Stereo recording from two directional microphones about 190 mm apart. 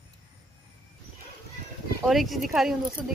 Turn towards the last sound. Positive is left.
turn(degrees=-5)  # may be behind; listen again after turning